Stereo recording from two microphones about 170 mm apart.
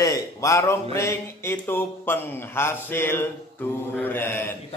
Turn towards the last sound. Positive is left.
turn(degrees=10)  # may be behind; listen again after turning